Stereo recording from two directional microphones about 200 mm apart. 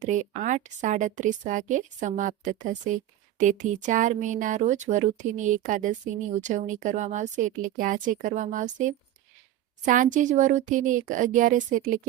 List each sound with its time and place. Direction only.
0.0 s speech: 40° right (ahead or behind)